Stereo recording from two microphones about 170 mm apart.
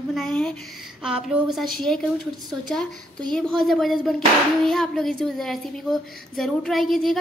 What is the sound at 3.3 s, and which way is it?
A woman's voice, centre (ahead or behind).